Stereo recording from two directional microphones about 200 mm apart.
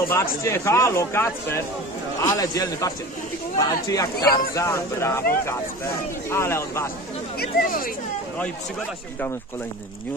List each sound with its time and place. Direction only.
0.1 s speech: 10° left (ahead or behind)
7.3 s speech: 45° left (ahead or behind)